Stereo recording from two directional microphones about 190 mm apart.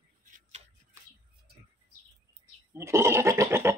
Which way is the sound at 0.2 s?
45° right (ahead or behind).